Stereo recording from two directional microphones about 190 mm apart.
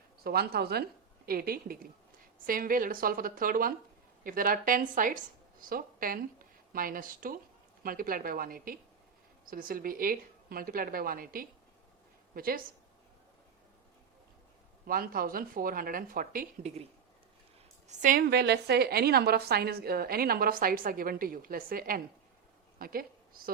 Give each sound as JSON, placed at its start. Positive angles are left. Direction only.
{"t": 0.3, "sound": "a woman's voice", "side_deg": -55}
{"t": 14.8, "sound": "a woman's voice", "side_deg": -50}
{"t": 17.8, "sound": "a woman's voice", "side_deg": -45}
{"t": 18.2, "sound": "a woman's voice", "side_deg": -55}